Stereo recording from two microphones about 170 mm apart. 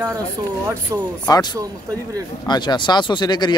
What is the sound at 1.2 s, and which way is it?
A man's voice, 20° left (ahead or behind).